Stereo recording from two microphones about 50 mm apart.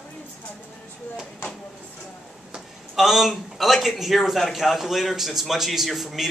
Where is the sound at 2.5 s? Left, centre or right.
Centre.